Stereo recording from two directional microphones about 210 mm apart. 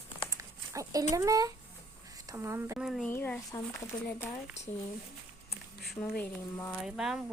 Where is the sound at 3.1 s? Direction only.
10° left (ahead or behind).